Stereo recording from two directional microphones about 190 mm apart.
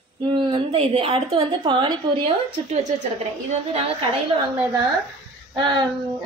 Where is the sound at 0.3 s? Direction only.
30° right (ahead or behind).